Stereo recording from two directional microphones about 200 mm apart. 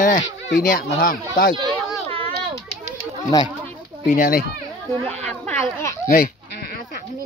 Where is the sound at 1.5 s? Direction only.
25° right (ahead or behind).